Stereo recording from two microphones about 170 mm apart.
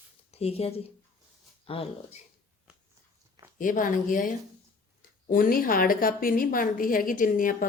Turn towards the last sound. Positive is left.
turn(degrees=55)  # may be behind; listen again after turning